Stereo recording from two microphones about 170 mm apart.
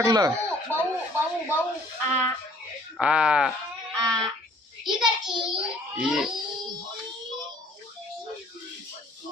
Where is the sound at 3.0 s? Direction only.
5° right (ahead or behind).